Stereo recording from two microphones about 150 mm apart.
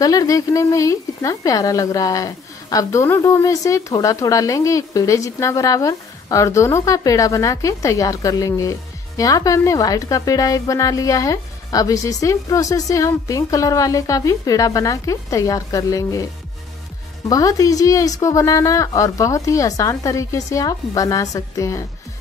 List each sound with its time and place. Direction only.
0.0 s speech: 25° left (ahead or behind)
17.3 s speech: 25° left (ahead or behind)